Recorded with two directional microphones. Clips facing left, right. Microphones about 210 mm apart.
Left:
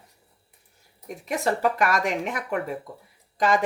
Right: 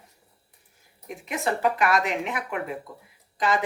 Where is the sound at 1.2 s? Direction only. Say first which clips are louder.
Left 1 dB; 45° left (ahead or behind).